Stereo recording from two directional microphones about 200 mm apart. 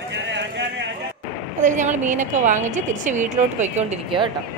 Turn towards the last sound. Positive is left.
turn(degrees=-30)  # may be behind; listen again after turning